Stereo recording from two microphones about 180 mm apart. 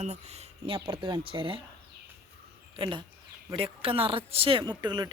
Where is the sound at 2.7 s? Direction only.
25° right (ahead or behind).